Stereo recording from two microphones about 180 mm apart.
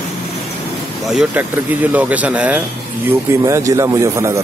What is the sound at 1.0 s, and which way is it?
Speech, 5° right (ahead or behind).